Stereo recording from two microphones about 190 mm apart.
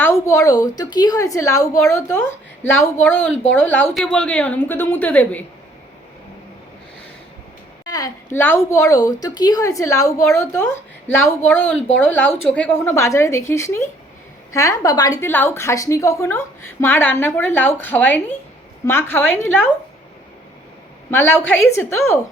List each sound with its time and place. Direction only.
0.0 s a woman's voice: 15° left (ahead or behind)
3.2 s speech: 90° left
3.5 s a woman's voice: 10° left (ahead or behind)
7.9 s a woman's voice: 20° left (ahead or behind)
21.1 s a woman's voice: 15° left (ahead or behind)